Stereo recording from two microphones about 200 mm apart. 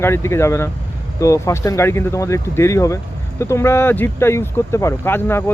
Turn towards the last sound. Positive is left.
turn(degrees=10)  # may be behind; listen again after turning